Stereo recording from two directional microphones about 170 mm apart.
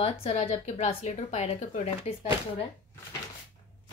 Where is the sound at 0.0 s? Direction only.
40° left (ahead or behind).